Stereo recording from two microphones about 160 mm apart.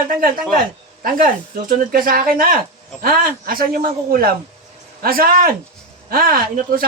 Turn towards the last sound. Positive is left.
turn(degrees=-65)  # may be behind; listen again after turning